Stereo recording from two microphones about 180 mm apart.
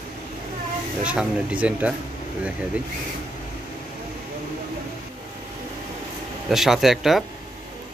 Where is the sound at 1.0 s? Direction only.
5° right (ahead or behind).